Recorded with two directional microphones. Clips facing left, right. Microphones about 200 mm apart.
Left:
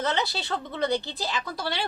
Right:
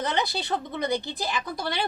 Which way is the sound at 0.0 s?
15° right (ahead or behind).